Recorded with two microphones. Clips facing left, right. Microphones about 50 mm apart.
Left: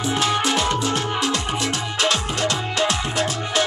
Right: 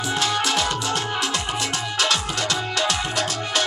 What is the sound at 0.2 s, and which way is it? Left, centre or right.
Music, left.